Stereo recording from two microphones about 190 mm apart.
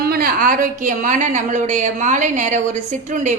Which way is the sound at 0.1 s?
50° right (ahead or behind).